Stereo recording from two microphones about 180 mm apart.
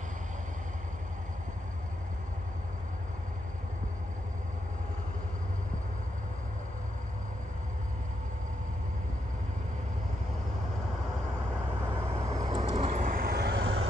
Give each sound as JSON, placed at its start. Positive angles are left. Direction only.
{"t": 12.3, "sound": "vehicle", "side_deg": -20}
{"t": 12.7, "sound": "vehicle", "side_deg": -40}